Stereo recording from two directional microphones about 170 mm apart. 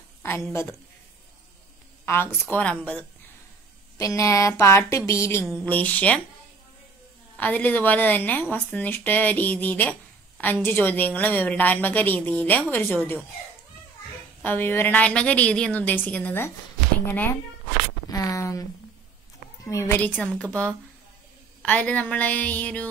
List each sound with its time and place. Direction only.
0.2 s a woman's voice: 15° left (ahead or behind)
2.0 s a woman's voice: 15° left (ahead or behind)
4.0 s a woman's voice: 20° left (ahead or behind)
7.3 s a woman's voice: 10° left (ahead or behind)
14.4 s a woman's voice: 10° left (ahead or behind)